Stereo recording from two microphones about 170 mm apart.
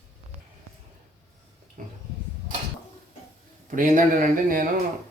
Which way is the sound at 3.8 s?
50° right (ahead or behind).